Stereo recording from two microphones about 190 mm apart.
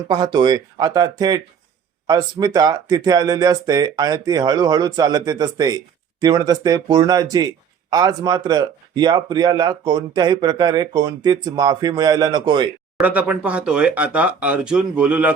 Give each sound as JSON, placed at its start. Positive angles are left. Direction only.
{"t": 0.1, "sound": "speech", "side_deg": -20}
{"t": 13.0, "sound": "speech", "side_deg": -10}